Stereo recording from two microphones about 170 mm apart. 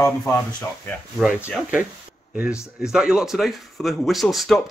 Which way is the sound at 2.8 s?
5° right (ahead or behind).